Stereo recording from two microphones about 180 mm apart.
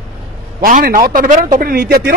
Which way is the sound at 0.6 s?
50° right (ahead or behind).